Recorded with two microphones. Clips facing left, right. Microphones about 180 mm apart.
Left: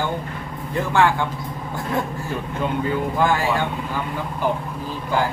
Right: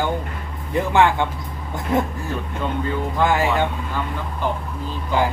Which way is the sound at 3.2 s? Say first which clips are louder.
Right 3 dB; 20° right (ahead or behind).